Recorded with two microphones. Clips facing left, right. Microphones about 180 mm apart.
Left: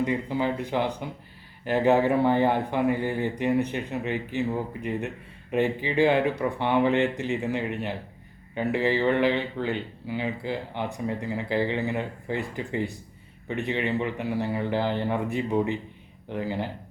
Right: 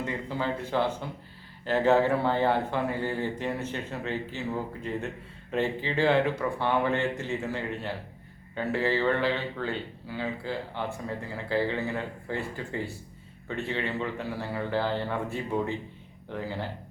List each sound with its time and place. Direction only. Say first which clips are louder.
0.0 s speech: left 5 dB; 15° left (ahead or behind)